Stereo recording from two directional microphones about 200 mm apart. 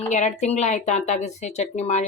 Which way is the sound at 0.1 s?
35° left (ahead or behind).